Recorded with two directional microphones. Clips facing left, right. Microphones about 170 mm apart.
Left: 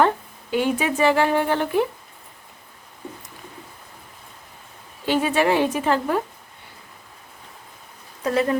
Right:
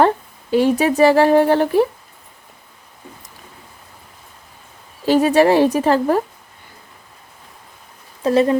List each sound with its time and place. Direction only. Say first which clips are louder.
0.5 s speech: right 7 dB; 35° right (ahead or behind)
5.0 s speech: right 7 dB; 40° right (ahead or behind)
8.2 s speech: right 6 dB; 25° right (ahead or behind)